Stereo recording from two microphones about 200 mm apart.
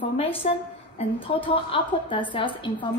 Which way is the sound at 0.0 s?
30° left (ahead or behind).